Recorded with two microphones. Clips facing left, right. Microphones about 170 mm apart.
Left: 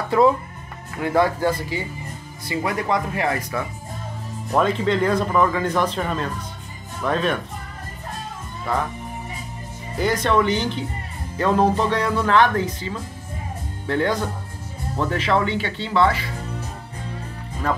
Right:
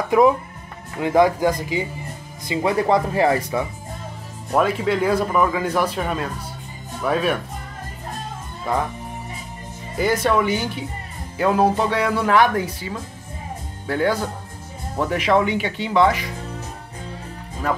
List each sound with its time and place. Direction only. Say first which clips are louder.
0.1 s speech: right 1 dB; 15° right (ahead or behind)
4.6 s speech: even; 5° right (ahead or behind)
8.7 s speech: right 1 dB; 15° right (ahead or behind)
9.9 s speech: right 1 dB; 5° right (ahead or behind)
17.6 s speech: right 1 dB; 10° right (ahead or behind)